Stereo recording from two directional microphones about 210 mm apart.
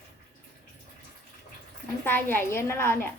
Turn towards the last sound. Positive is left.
turn(degrees=10)  # may be behind; listen again after turning